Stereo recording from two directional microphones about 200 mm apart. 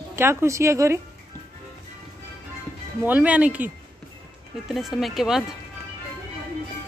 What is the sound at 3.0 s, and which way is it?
Speech, 10° right (ahead or behind).